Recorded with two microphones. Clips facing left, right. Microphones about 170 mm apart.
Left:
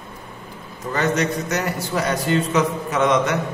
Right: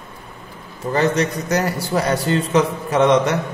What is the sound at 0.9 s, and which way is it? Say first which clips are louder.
A man's voice: right 2 dB; 35° right (ahead or behind).